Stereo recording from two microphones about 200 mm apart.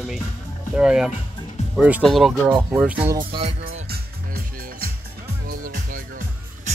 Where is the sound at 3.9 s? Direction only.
50° right (ahead or behind).